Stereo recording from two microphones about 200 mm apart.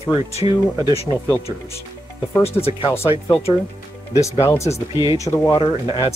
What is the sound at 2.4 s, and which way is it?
Speech, 30° left (ahead or behind).